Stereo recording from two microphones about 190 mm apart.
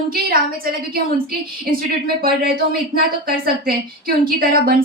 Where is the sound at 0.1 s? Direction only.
50° right (ahead or behind).